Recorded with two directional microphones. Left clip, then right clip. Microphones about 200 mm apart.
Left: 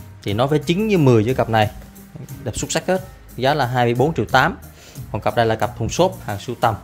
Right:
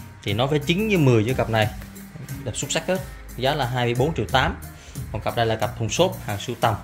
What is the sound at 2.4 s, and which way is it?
Speech, 40° left (ahead or behind).